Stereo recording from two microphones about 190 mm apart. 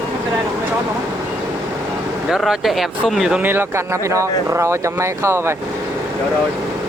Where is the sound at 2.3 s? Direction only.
Centre (ahead or behind).